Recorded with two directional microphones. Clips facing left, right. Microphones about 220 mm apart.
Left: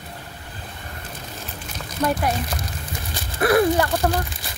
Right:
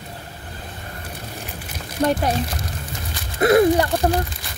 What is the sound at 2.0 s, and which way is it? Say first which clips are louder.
Speech: right 3 dB; 30° right (ahead or behind).